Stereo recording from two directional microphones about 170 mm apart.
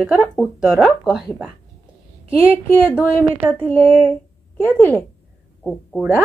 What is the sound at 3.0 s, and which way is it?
Speech, 10° right (ahead or behind).